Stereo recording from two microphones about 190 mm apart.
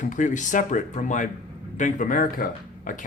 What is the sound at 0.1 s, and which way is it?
Speech, 40° left (ahead or behind).